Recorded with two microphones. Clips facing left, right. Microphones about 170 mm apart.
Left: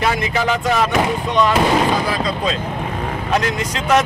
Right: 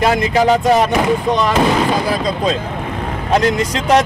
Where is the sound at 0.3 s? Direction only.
40° right (ahead or behind).